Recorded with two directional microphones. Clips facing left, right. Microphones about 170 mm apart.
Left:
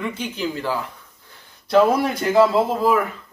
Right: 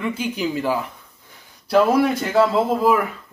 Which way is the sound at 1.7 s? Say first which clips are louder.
Even; centre (ahead or behind).